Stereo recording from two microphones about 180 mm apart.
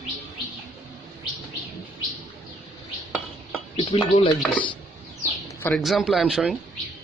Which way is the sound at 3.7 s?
30° left (ahead or behind).